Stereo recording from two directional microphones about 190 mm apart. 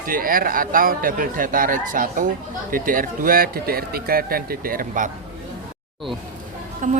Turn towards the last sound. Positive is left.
turn(degrees=-45)  # may be behind; listen again after turning